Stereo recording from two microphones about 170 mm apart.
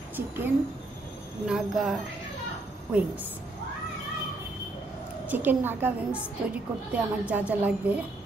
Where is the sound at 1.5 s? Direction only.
Centre (ahead or behind).